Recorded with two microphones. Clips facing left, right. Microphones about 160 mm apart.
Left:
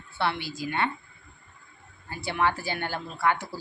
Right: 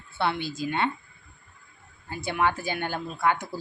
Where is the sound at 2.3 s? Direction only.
20° right (ahead or behind).